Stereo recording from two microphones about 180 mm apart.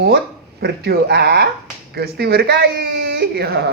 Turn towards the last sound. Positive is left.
turn(degrees=-65)  # may be behind; listen again after turning